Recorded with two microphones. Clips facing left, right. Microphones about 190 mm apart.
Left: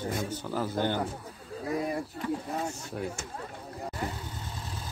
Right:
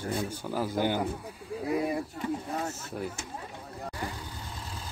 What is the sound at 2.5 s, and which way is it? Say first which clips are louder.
Speech: even; 5° right (ahead or behind).